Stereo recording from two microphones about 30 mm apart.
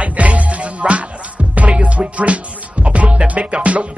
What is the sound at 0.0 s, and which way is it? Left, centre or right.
Music, right.